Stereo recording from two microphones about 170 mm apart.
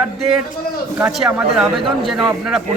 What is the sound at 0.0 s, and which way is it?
A man's voice, 5° right (ahead or behind).